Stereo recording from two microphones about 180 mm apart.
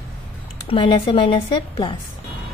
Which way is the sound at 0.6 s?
30° left (ahead or behind).